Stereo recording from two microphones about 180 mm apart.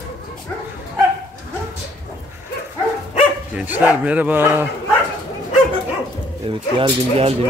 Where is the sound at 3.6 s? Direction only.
10° right (ahead or behind).